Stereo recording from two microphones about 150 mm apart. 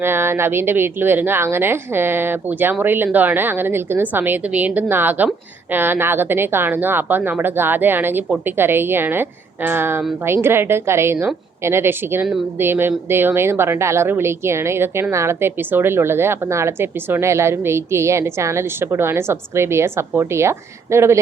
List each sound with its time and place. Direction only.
0.0 s a woman's voice: 15° right (ahead or behind)